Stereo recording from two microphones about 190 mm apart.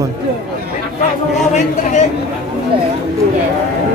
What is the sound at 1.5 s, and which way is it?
Speech, 40° left (ahead or behind).